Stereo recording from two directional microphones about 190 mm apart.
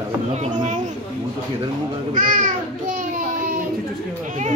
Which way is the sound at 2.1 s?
45° right (ahead or behind).